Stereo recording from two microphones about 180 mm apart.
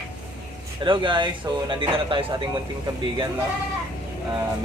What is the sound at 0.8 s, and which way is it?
Speech, 30° right (ahead or behind).